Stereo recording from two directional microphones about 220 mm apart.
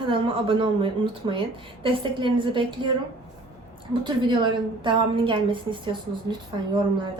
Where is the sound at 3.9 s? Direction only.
20° right (ahead or behind).